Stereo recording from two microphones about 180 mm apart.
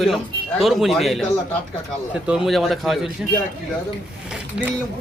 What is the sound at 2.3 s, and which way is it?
Speech, centre (ahead or behind).